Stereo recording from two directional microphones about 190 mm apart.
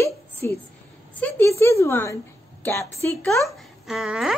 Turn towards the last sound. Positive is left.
turn(degrees=0)  # may be behind; listen again after turning